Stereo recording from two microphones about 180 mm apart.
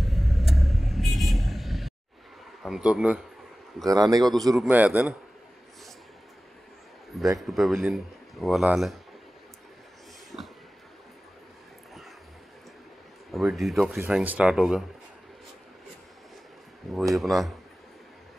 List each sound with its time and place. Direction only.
0.0 s vehicle: centre (ahead or behind)
2.6 s speech: 5° right (ahead or behind)
3.8 s a man's voice: 20° right (ahead or behind)
4.2 s a man's voice: centre (ahead or behind)
7.3 s speech: centre (ahead or behind)
10.3 s a sound: 5° right (ahead or behind)
13.3 s speech: centre (ahead or behind)
17.1 s speech: centre (ahead or behind)